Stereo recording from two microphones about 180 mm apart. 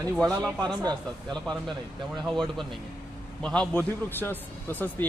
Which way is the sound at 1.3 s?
5° left (ahead or behind).